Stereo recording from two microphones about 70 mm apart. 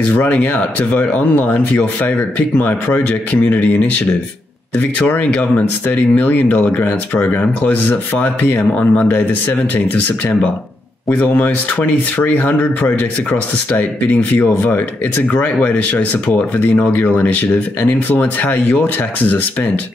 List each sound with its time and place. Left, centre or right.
0.1 s speech: left
11.1 s speech: centre